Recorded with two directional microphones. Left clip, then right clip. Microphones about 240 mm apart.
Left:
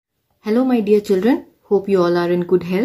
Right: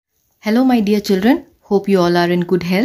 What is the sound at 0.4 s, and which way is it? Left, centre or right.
Speech, right.